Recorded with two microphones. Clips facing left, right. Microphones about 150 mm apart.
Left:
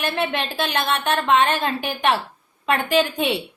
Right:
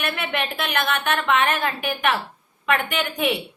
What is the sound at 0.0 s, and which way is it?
A woman's voice, 30° left (ahead or behind).